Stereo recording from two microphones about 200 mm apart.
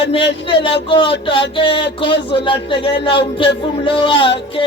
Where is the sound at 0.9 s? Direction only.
25° left (ahead or behind).